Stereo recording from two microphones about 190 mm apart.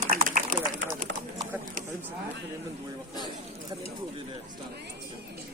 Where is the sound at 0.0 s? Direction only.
45° right (ahead or behind).